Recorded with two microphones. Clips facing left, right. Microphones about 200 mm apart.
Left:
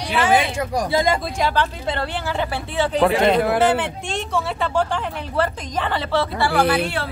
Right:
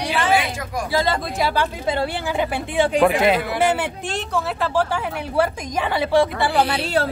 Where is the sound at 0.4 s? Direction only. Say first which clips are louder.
Left 4 dB; 30° left (ahead or behind).